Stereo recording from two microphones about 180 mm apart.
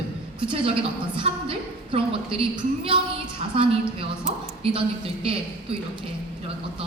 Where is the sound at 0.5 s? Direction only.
30° right (ahead or behind).